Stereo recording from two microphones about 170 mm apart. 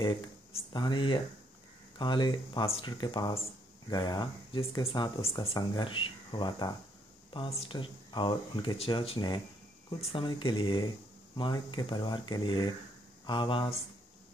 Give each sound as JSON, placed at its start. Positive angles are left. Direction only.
{"t": 0.0, "sound": "speech", "side_deg": 30}